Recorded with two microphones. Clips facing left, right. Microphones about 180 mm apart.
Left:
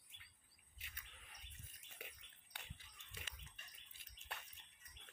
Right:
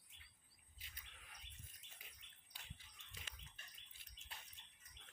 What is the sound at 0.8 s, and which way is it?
Cricket, 65° left (ahead or behind).